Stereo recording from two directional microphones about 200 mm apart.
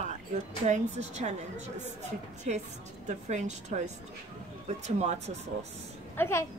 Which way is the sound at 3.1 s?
35° right (ahead or behind).